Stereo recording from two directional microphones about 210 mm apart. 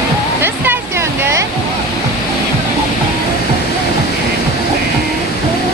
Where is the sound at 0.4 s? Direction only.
10° right (ahead or behind).